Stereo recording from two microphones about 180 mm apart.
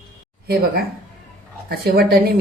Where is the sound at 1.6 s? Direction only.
60° right (ahead or behind).